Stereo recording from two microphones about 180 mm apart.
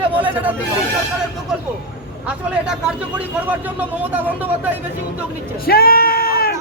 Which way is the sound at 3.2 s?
10° right (ahead or behind).